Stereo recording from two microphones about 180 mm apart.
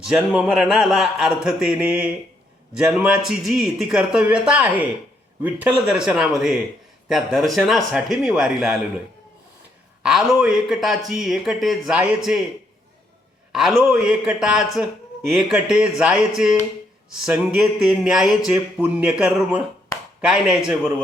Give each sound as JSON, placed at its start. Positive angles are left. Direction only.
{"t": 0.0, "sound": "speech", "side_deg": -5}
{"t": 10.0, "sound": "speech", "side_deg": -5}
{"t": 13.5, "sound": "speech", "side_deg": 0}
{"t": 19.9, "sound": "chop", "side_deg": 15}
{"t": 20.2, "sound": "speech", "side_deg": -5}